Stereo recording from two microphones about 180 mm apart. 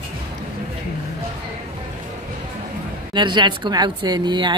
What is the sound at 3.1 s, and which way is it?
A woman's voice, 25° right (ahead or behind).